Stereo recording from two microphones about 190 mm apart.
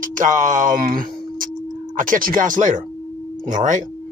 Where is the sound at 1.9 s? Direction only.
45° right (ahead or behind).